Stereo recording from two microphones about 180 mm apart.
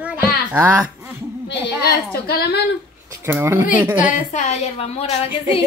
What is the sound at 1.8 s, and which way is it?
Speech, 60° left (ahead or behind).